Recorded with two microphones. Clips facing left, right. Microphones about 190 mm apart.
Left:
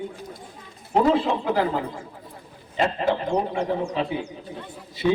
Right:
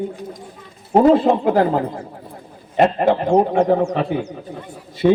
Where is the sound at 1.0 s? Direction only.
50° right (ahead or behind).